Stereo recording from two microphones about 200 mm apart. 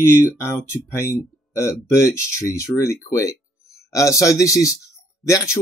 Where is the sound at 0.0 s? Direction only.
10° left (ahead or behind).